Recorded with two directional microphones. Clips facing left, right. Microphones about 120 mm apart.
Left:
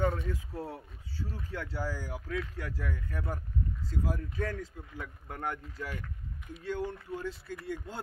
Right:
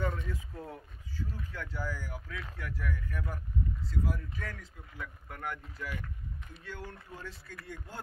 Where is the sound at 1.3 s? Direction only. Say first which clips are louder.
Left 3 dB; 30° left (ahead or behind).